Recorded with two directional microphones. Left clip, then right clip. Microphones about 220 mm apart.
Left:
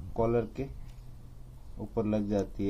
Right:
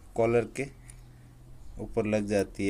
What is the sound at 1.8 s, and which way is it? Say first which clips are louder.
Speech: right 3 dB; 15° right (ahead or behind).